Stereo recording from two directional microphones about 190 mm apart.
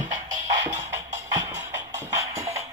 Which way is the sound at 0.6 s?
20° right (ahead or behind).